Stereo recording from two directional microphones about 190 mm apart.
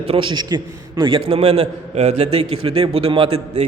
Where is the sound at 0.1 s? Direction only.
25° right (ahead or behind).